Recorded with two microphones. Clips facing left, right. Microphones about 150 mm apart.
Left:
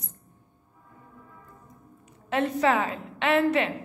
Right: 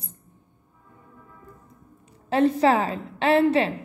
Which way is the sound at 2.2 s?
35° right (ahead or behind).